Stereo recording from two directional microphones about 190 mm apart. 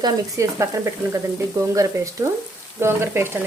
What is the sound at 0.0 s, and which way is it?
Speech, 15° right (ahead or behind).